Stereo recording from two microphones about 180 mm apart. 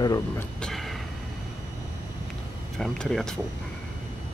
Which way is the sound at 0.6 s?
Centre (ahead or behind).